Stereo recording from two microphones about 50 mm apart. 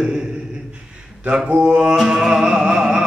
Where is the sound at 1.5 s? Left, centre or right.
Right.